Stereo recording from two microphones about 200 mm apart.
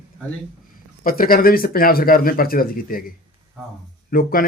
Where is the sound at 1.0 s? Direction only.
45° left (ahead or behind).